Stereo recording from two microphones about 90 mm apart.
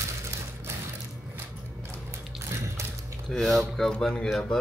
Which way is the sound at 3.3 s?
Centre (ahead or behind).